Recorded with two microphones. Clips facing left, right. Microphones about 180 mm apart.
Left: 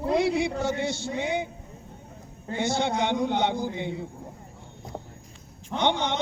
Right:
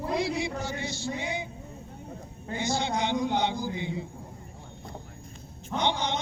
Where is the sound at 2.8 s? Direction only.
60° left (ahead or behind).